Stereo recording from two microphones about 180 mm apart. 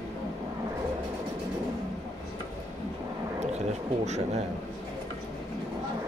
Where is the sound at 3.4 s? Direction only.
40° right (ahead or behind).